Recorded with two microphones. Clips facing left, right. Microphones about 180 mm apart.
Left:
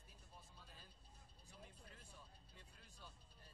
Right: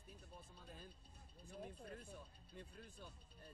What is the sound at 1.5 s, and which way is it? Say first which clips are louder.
Speech: right 11 dB; 55° right (ahead or behind).